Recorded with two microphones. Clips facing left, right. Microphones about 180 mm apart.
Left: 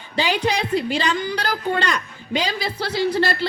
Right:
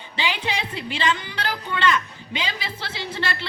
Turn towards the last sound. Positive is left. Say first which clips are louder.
# left 9 dB
turn(degrees=40)  # may be behind; listen again after turning